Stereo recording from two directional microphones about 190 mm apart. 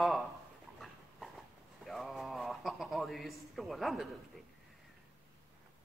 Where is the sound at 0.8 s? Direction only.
Centre (ahead or behind).